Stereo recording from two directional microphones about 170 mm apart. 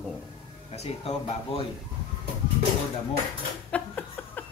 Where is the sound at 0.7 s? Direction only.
35° left (ahead or behind).